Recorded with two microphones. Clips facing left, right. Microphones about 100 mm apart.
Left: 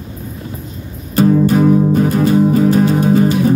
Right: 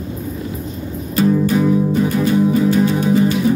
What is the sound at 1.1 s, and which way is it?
Music, 45° left (ahead or behind).